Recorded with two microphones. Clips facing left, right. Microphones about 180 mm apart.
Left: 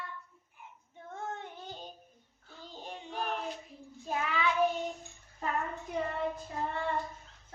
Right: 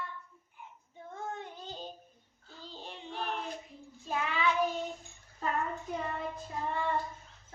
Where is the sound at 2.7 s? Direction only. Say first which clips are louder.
Left 1 dB; 45° left (ahead or behind).